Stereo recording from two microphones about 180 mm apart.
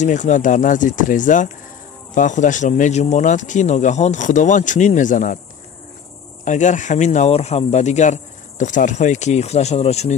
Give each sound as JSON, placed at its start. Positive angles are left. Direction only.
{"t": 0.0, "sound": "speech", "side_deg": 40}
{"t": 6.4, "sound": "speech", "side_deg": 45}